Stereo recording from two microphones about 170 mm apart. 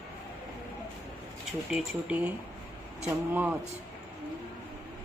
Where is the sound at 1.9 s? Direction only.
10° right (ahead or behind).